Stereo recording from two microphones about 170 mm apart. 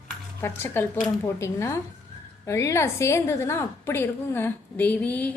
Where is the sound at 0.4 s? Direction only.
15° left (ahead or behind).